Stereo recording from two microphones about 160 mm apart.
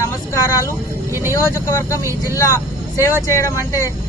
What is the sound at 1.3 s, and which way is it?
Speech, 15° left (ahead or behind).